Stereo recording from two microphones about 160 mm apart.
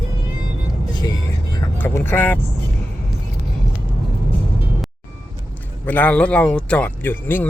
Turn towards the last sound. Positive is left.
turn(degrees=10)  # may be behind; listen again after turning